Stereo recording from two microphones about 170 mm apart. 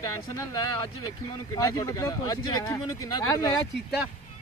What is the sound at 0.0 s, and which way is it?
Speech, 20° left (ahead or behind).